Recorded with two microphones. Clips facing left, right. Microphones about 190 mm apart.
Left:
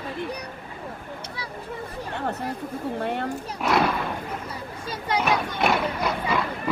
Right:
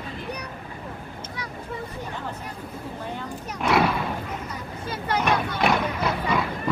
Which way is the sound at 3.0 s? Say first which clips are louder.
Left 6 dB; 65° left (ahead or behind).